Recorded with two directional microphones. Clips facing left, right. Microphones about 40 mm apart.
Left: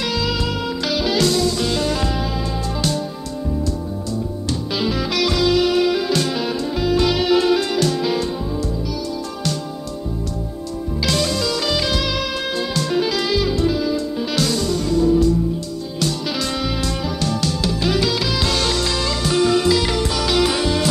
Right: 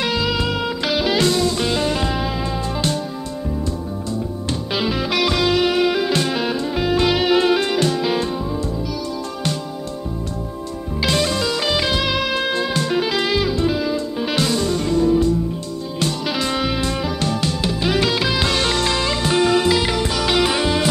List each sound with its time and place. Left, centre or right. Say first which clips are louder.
0.0 s music: right 2 dB; right
4.5 s music: even; right
11.0 s music: right 2 dB; right